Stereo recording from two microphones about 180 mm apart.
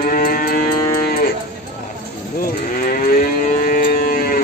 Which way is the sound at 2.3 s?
50° left (ahead or behind).